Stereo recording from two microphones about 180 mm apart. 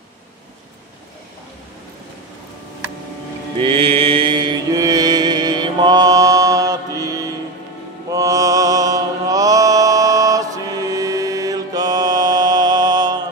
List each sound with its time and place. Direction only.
3.6 s mantra: 30° right (ahead or behind)